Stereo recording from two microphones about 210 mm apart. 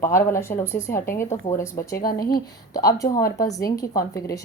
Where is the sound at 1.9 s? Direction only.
45° left (ahead or behind).